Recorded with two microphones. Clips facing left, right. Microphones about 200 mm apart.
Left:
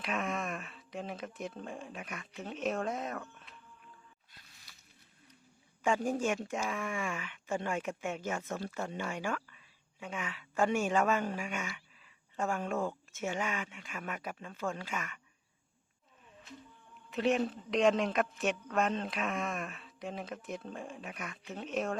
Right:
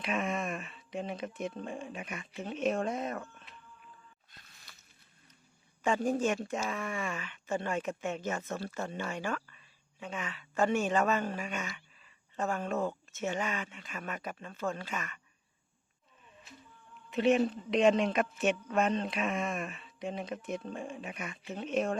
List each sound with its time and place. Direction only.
0.0 s speech: centre (ahead or behind)
4.3 s a sound: 45° right (ahead or behind)
5.8 s speech: 10° left (ahead or behind)
17.1 s speech: centre (ahead or behind)